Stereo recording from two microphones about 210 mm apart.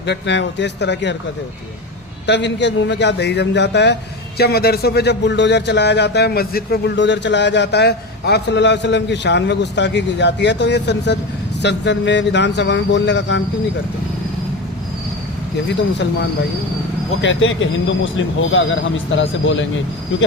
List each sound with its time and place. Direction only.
0.0 s speech: 55° left (ahead or behind)
2.2 s speech: 55° left (ahead or behind)
17.2 s speech: 65° left (ahead or behind)